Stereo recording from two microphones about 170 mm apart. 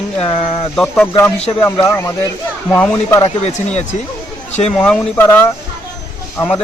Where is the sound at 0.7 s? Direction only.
10° left (ahead or behind).